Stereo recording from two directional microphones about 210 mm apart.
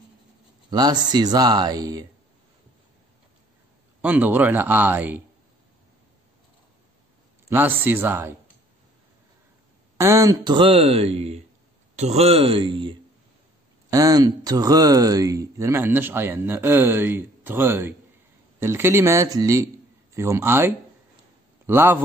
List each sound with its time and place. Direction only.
0.7 s speech: 20° right (ahead or behind)
4.0 s speech: 10° right (ahead or behind)
7.4 s a man's voice: 10° right (ahead or behind)
9.9 s speech: 15° right (ahead or behind)